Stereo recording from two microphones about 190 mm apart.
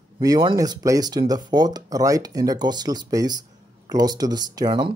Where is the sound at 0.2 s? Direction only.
20° right (ahead or behind).